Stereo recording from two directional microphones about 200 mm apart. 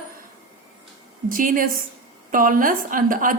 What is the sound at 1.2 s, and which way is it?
A woman's voice, 45° right (ahead or behind).